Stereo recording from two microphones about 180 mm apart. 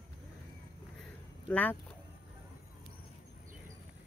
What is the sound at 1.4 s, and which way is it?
Speech, 10° left (ahead or behind).